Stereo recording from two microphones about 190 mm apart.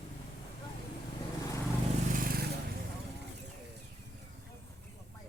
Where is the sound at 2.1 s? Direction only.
50° right (ahead or behind).